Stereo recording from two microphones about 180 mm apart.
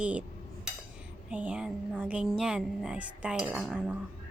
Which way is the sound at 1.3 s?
5° right (ahead or behind).